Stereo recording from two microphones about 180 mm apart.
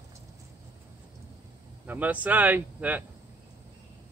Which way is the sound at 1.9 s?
10° right (ahead or behind).